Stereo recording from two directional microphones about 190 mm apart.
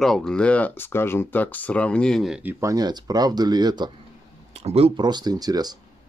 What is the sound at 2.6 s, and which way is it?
Speech, 20° right (ahead or behind).